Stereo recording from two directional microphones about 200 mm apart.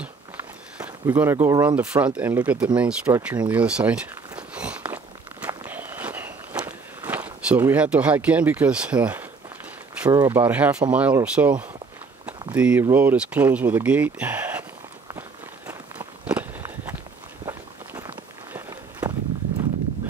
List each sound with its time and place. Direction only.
1.0 s speech: 10° right (ahead or behind)
2.1 s a sound: 5° right (ahead or behind)
10.1 s speech: 10° right (ahead or behind)
15.0 s walk: 10° right (ahead or behind)